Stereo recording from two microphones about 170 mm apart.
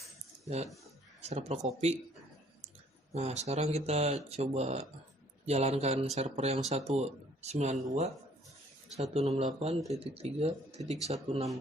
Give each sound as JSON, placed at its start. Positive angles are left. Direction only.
{"t": 0.4, "sound": "speech", "side_deg": -40}
{"t": 3.1, "sound": "speech", "side_deg": -40}